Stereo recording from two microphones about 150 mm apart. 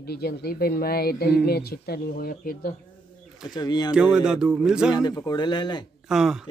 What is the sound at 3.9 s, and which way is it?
A man's voice, 5° right (ahead or behind).